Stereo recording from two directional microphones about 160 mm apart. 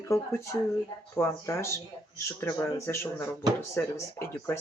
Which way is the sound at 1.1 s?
20° left (ahead or behind).